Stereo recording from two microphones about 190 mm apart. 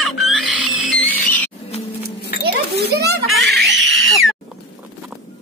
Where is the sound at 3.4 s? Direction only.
65° right (ahead or behind); by 4.3 s 90° right.